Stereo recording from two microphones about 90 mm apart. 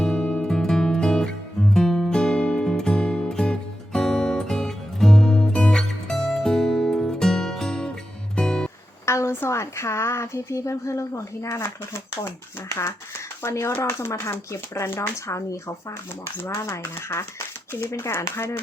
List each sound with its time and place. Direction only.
0.0 s music: 10° left (ahead or behind)
9.0 s a woman's voice: 30° left (ahead or behind)